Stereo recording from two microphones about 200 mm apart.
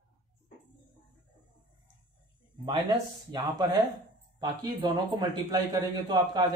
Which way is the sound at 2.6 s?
20° right (ahead or behind).